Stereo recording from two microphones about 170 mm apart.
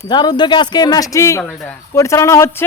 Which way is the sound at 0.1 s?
25° left (ahead or behind).